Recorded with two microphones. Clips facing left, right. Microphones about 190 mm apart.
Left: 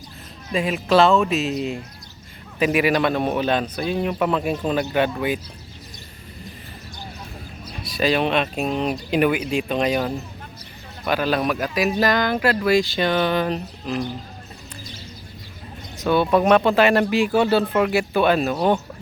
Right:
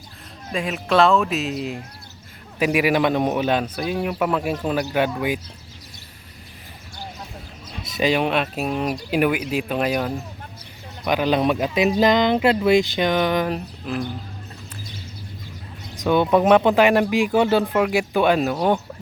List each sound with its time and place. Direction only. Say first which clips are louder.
0.5 s a man's voice: left 2 dB; centre (ahead or behind)
7.9 s a man's voice: even; 15° right (ahead or behind)
11.0 s speech: right 2 dB; 15° right (ahead or behind)
16.0 s a man's voice: right 1 dB; 15° right (ahead or behind)